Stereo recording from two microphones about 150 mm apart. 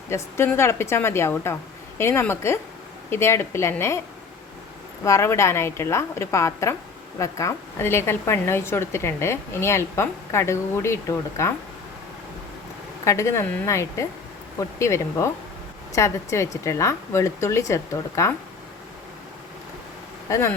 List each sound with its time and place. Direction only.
0.1 s a woman's voice: 15° left (ahead or behind)
5.0 s a woman's voice: 20° left (ahead or behind)
13.1 s speech: 20° left (ahead or behind)